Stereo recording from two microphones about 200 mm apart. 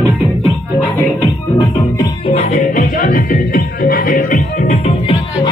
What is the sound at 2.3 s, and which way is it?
Music, 30° left (ahead or behind).